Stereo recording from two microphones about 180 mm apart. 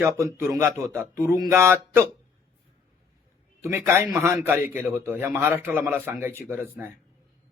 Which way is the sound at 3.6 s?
15° right (ahead or behind).